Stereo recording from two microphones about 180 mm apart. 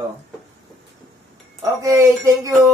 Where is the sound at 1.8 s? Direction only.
20° right (ahead or behind).